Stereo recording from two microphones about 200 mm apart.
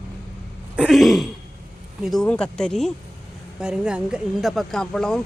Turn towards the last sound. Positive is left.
turn(degrees=5)  # may be behind; listen again after turning